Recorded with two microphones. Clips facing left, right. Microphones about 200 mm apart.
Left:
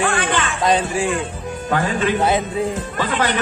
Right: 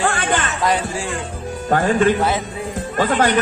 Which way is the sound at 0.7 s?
20° left (ahead or behind).